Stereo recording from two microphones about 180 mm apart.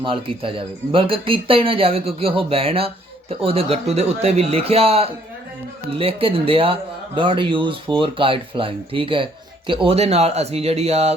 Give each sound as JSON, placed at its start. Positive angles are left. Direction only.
{"t": 0.0, "sound": "speech", "side_deg": -30}